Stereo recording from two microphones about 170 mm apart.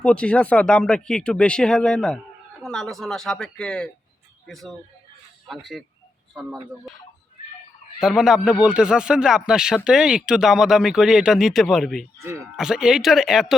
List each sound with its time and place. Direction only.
0.0 s speech: 5° left (ahead or behind)
7.9 s speech: centre (ahead or behind)
12.2 s speech: 15° right (ahead or behind)
12.5 s speech: 5° right (ahead or behind)